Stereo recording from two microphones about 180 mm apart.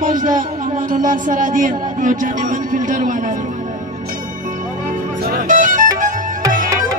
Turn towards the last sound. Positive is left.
turn(degrees=-45)  # may be behind; listen again after turning